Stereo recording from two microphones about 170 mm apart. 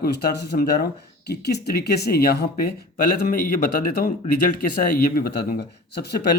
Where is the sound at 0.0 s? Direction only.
65° left (ahead or behind).